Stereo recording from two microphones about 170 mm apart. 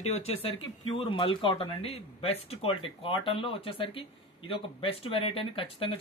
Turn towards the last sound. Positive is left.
turn(degrees=30)  # may be behind; listen again after turning